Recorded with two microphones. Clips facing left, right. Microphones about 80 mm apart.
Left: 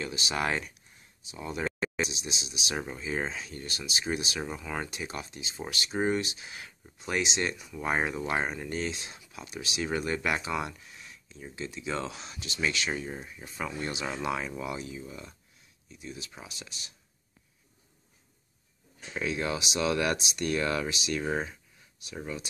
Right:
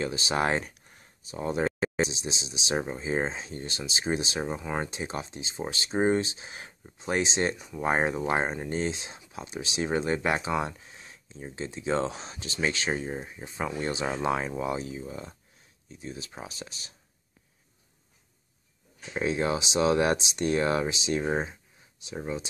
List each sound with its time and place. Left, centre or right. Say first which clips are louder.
0.0 s speech: right 4 dB; right
0.7 s speech: right 3 dB; right
19.1 s speech: right 4 dB; right